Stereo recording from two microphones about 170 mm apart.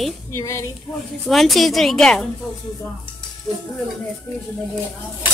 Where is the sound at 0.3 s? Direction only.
20° left (ahead or behind).